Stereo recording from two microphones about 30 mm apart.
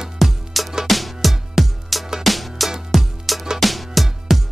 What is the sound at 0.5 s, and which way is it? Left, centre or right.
Music, centre.